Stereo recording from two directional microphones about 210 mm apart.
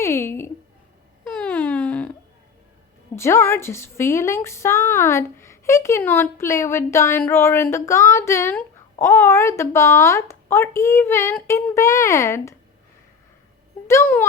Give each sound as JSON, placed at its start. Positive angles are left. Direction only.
{"t": 0.0, "sound": "a sound", "side_deg": 10}
{"t": 3.2, "sound": "a woman's voice", "side_deg": 10}
{"t": 13.8, "sound": "a woman's voice", "side_deg": 10}